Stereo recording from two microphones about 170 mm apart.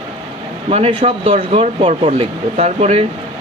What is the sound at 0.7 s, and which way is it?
Speech, 35° right (ahead or behind).